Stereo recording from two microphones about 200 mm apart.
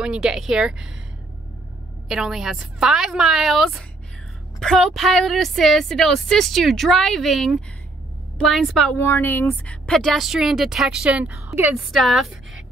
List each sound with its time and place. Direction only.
0.0 s a woman's voice: 5° right (ahead or behind)
2.0 s a woman's voice: centre (ahead or behind)
8.9 s a woman's voice: 15° left (ahead or behind)